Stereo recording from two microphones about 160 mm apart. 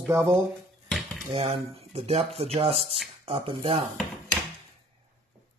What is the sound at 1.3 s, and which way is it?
Speech, 40° right (ahead or behind).